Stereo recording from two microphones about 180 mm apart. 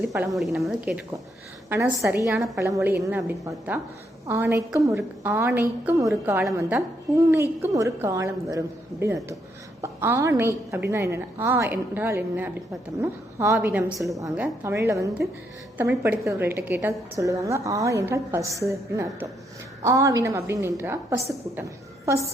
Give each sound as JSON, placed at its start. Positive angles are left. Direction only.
{"t": 0.3, "sound": "a woman's voice", "side_deg": 0}
{"t": 1.7, "sound": "a woman's voice", "side_deg": -15}